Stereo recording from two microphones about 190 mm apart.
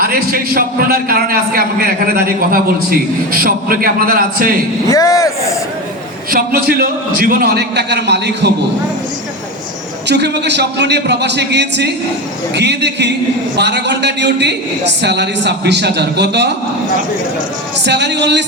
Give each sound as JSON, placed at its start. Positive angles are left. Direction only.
{"t": 0.0, "sound": "a man's voice", "side_deg": -50}
{"t": 4.9, "sound": "speech", "side_deg": 15}
{"t": 6.3, "sound": "a man's voice", "side_deg": -50}
{"t": 10.1, "sound": "a man's voice", "side_deg": -60}
{"t": 17.8, "sound": "a man's voice", "side_deg": -65}